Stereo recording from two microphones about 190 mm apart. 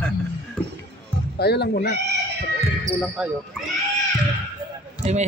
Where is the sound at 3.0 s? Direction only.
5° right (ahead or behind).